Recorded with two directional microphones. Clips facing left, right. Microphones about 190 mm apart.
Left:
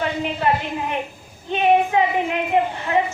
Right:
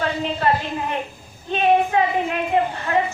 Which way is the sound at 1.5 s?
15° left (ahead or behind).